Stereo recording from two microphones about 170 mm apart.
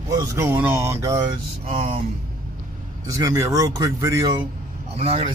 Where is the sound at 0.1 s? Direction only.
20° right (ahead or behind).